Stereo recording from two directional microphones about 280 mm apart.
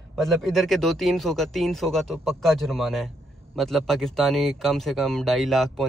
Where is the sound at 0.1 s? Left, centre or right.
Centre.